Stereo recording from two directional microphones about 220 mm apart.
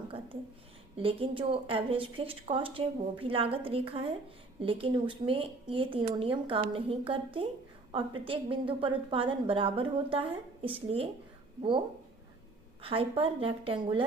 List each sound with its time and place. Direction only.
0.9 s a woman's voice: 25° right (ahead or behind)
12.8 s a woman's voice: 25° right (ahead or behind)